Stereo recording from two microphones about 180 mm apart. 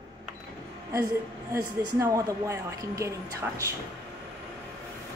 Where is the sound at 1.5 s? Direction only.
20° right (ahead or behind).